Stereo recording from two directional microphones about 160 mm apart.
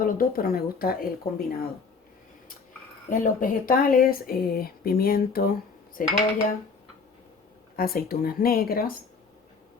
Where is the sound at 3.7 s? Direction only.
60° left (ahead or behind).